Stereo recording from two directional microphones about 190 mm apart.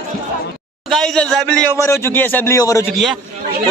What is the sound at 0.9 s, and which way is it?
A man's voice, centre (ahead or behind).